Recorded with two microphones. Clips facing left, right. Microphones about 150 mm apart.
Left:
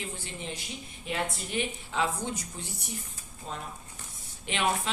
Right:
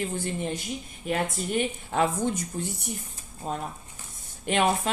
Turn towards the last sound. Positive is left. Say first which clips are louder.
# right 9 dB
turn(degrees=-50)  # may be behind; listen again after turning